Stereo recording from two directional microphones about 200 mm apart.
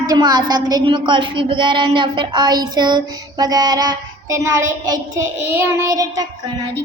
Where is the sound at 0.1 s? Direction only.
20° right (ahead or behind).